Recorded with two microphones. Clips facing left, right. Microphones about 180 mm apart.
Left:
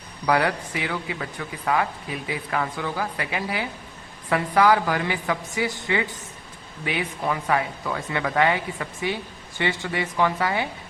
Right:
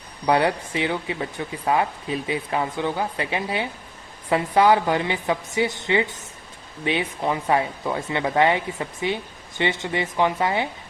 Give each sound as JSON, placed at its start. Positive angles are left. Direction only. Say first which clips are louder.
{"t": 0.3, "sound": "speech", "louder": "right 2 dB", "side_deg": -25}